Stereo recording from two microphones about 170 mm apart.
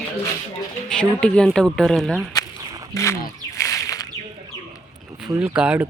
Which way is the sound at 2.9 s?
20° left (ahead or behind).